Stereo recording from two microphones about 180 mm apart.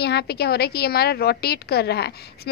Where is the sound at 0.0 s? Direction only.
65° left (ahead or behind).